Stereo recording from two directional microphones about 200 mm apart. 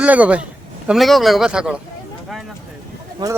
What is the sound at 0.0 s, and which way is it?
A man's voice, 5° right (ahead or behind).